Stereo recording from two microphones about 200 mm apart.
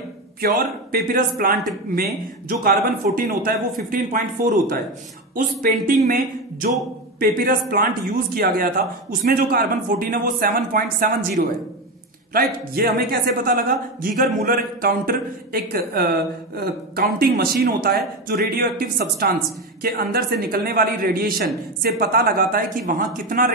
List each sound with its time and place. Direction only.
0.9 s a man's voice: 45° right (ahead or behind)